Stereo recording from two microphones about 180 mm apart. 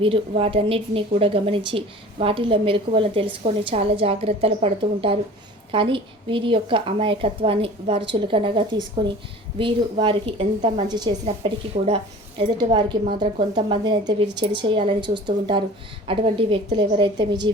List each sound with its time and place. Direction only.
0.0 s a woman's voice: 30° right (ahead or behind)
11.7 s speech: 45° right (ahead or behind)
12.4 s a woman's voice: 25° right (ahead or behind)